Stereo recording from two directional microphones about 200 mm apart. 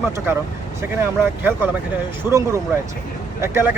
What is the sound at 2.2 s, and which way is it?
Speech, 15° right (ahead or behind).